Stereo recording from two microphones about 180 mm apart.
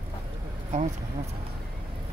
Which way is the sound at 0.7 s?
40° right (ahead or behind).